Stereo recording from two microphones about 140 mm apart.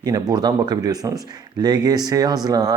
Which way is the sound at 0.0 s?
25° right (ahead or behind).